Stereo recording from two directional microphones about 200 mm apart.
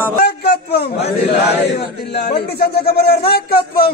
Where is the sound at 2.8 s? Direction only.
50° left (ahead or behind).